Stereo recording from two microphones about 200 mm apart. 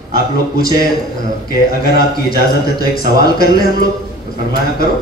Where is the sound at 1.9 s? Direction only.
50° left (ahead or behind).